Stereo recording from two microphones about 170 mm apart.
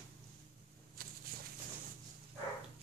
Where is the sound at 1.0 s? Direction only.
55° right (ahead or behind).